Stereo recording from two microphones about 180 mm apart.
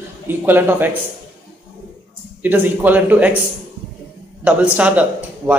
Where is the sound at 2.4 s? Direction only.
10° right (ahead or behind).